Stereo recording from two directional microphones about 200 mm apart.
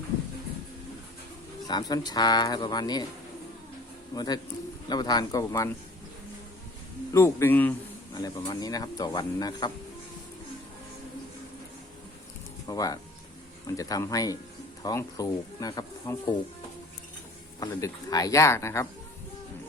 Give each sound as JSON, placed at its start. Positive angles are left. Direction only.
{"t": 1.6, "sound": "speech", "side_deg": 20}
{"t": 4.1, "sound": "speech", "side_deg": 20}
{"t": 7.1, "sound": "speech", "side_deg": 15}
{"t": 12.6, "sound": "speech", "side_deg": 20}
{"t": 17.6, "sound": "speech", "side_deg": 15}